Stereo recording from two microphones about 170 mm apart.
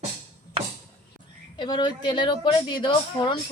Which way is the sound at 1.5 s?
25° left (ahead or behind).